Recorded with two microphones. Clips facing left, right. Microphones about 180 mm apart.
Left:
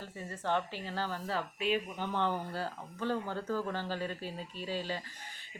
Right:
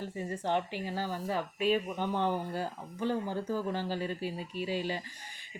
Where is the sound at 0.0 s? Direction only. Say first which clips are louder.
Right 4 dB; 15° right (ahead or behind).